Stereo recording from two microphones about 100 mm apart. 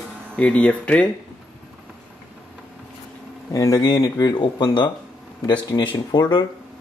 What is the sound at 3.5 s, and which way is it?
Speech, 35° left (ahead or behind).